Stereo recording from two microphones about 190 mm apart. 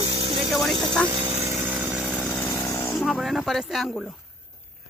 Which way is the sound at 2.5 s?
15° left (ahead or behind).